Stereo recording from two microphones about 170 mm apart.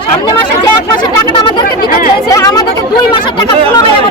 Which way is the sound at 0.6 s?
25° left (ahead or behind).